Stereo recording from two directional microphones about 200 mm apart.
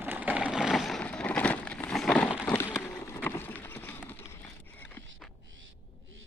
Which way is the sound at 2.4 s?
10° left (ahead or behind).